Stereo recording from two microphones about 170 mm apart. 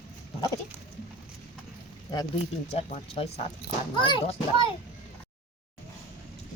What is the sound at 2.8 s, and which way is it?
Speech, 35° left (ahead or behind).